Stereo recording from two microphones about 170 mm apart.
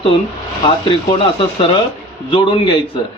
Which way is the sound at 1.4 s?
30° left (ahead or behind).